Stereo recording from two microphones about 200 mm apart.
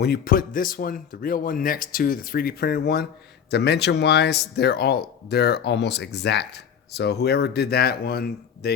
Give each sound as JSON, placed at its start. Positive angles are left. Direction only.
{"t": 0.0, "sound": "speech", "side_deg": 50}